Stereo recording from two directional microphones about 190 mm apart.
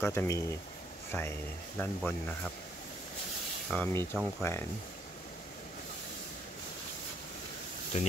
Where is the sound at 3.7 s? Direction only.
10° left (ahead or behind).